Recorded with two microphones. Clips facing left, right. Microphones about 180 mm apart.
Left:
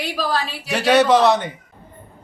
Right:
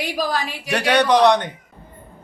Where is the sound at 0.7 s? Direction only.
5° left (ahead or behind).